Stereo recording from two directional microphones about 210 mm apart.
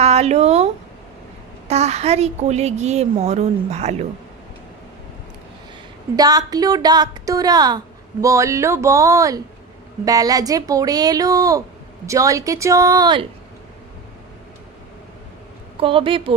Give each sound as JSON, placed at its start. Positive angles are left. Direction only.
{"t": 0.0, "sound": "a woman's voice", "side_deg": -30}
{"t": 6.1, "sound": "a woman's voice", "side_deg": -15}
{"t": 15.8, "sound": "speech", "side_deg": -25}